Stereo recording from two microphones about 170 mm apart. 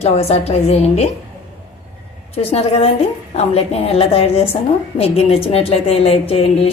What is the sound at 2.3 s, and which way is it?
A woman's voice, 35° left (ahead or behind).